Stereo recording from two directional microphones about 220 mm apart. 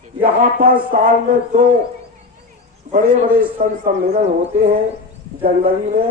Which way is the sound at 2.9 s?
35° right (ahead or behind).